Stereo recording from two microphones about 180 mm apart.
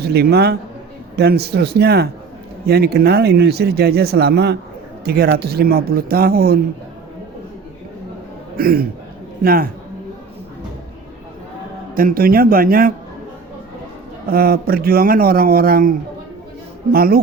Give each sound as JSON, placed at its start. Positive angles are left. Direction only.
{"t": 0.0, "sound": "speech", "side_deg": -60}
{"t": 8.5, "sound": "speech", "side_deg": -55}
{"t": 11.9, "sound": "speech", "side_deg": -55}
{"t": 14.3, "sound": "speech", "side_deg": -55}